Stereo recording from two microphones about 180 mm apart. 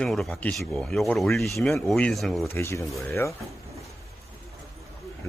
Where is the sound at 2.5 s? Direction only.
15° left (ahead or behind).